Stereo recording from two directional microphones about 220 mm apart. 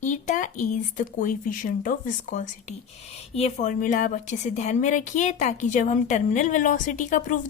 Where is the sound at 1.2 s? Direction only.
35° left (ahead or behind).